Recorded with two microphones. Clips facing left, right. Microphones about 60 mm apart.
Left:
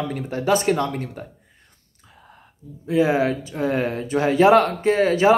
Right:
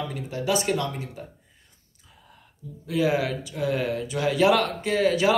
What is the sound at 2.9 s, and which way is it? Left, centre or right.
Speech, left.